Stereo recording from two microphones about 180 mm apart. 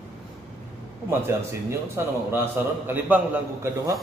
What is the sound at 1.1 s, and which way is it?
A man's voice, 15° right (ahead or behind).